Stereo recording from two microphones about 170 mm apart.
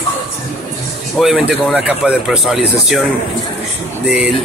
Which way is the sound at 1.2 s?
5° right (ahead or behind).